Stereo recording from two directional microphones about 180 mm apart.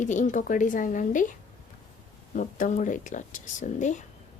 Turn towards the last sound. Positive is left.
turn(degrees=40)  # may be behind; listen again after turning